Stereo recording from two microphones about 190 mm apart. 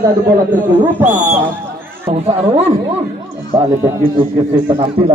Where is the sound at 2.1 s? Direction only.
30° right (ahead or behind).